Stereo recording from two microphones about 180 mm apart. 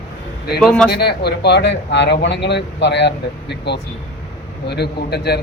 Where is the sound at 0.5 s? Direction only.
5° left (ahead or behind).